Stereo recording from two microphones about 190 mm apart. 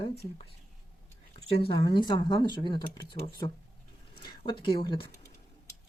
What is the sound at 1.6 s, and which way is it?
Speech, 25° left (ahead or behind).